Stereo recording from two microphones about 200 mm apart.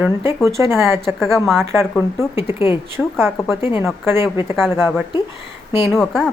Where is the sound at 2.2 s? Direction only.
10° right (ahead or behind).